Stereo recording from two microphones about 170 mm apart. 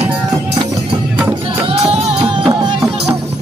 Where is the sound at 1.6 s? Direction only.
40° right (ahead or behind).